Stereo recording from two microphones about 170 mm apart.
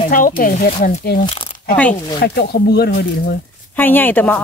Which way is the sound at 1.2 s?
30° left (ahead or behind).